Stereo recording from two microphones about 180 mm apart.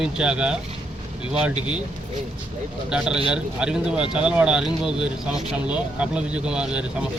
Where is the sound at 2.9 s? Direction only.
5° right (ahead or behind).